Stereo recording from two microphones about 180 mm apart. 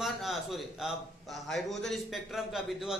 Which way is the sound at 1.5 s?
Centre (ahead or behind).